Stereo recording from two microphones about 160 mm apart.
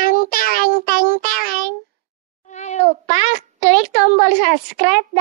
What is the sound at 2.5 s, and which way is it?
Meow, 45° left (ahead or behind).